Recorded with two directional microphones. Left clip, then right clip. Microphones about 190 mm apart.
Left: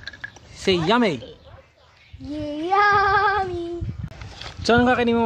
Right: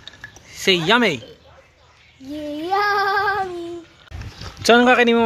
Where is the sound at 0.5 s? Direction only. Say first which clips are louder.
Right 4 dB; centre (ahead or behind).